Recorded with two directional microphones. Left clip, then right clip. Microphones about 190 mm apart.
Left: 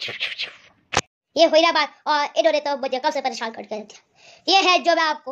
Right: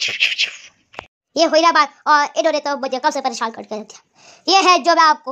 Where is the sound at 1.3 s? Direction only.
35° right (ahead or behind).